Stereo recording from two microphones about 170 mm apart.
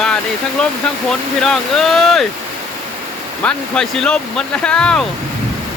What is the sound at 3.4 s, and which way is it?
Speech, 5° left (ahead or behind).